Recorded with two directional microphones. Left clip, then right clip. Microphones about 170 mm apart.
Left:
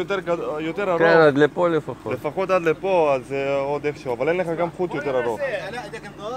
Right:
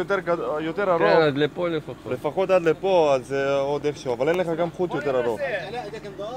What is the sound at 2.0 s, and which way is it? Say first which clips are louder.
Speech: right 4 dB; 10° right (ahead or behind).